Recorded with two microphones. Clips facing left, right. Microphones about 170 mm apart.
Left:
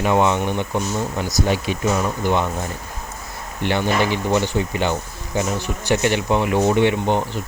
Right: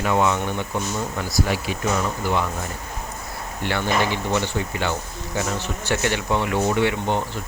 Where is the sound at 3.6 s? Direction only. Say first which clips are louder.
Left 3 dB; 20° left (ahead or behind).